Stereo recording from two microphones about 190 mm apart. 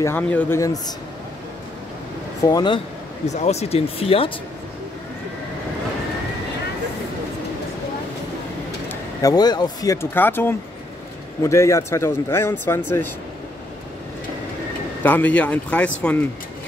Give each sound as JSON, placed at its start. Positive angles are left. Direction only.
{"t": 0.0, "sound": "speech", "side_deg": 10}
{"t": 2.4, "sound": "speech", "side_deg": 20}
{"t": 3.3, "sound": "speech", "side_deg": 35}
{"t": 8.8, "sound": "speech", "side_deg": 20}
{"t": 15.0, "sound": "speech", "side_deg": 10}